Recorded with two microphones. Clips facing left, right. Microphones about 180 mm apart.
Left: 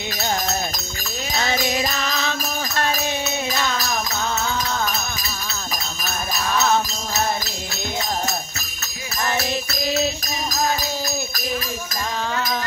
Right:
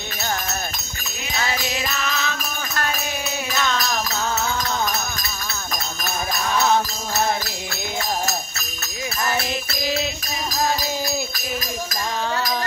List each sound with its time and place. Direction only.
1.3 s music: 40° left (ahead or behind)